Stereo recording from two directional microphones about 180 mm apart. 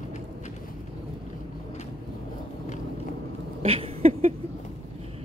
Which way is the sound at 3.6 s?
35° right (ahead or behind).